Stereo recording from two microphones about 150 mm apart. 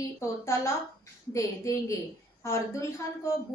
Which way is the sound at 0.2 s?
20° left (ahead or behind).